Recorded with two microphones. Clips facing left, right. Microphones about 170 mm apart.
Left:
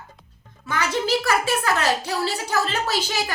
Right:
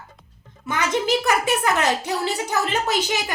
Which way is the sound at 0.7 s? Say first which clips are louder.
Right 1 dB; 20° right (ahead or behind).